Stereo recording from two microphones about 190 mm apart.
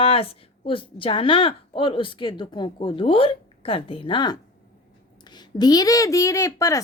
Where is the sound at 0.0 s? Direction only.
30° left (ahead or behind).